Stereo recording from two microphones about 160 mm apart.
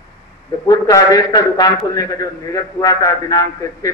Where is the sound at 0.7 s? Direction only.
20° left (ahead or behind).